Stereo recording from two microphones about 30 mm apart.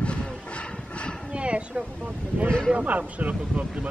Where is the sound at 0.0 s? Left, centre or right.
Left.